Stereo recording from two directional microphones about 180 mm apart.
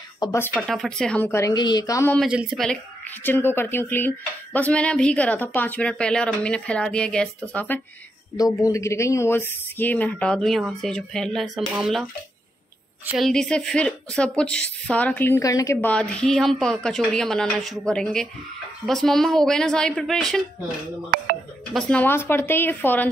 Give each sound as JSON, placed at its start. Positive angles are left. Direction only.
{"t": 0.2, "sound": "speech", "side_deg": 15}
{"t": 0.5, "sound": "a woman's voice", "side_deg": 0}
{"t": 1.5, "sound": "a woman's voice", "side_deg": 25}
{"t": 2.1, "sound": "a woman's voice", "side_deg": -5}
{"t": 3.3, "sound": "speech", "side_deg": 10}
{"t": 8.4, "sound": "a woman's voice", "side_deg": 20}
{"t": 13.2, "sound": "a woman's voice", "side_deg": 5}
{"t": 21.7, "sound": "speech", "side_deg": 5}